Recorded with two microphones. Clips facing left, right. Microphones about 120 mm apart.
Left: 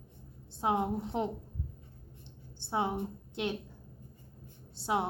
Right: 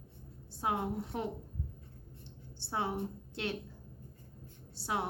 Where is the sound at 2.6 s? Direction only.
20° left (ahead or behind).